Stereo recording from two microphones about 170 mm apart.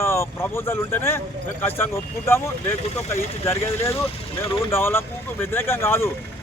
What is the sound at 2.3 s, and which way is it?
Speech, 15° left (ahead or behind).